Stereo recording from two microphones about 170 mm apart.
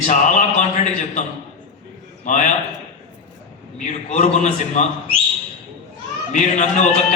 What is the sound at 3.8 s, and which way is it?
A man's voice, 45° left (ahead or behind).